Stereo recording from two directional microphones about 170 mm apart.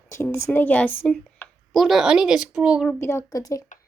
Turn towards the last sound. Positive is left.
turn(degrees=20)  # may be behind; listen again after turning